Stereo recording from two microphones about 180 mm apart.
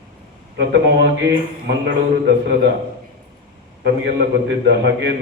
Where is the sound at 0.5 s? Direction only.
75° right (ahead or behind).